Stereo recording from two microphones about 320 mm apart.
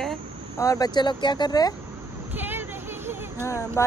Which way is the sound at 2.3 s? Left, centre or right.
Centre.